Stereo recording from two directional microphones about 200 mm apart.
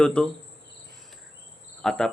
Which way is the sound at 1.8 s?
Centre (ahead or behind).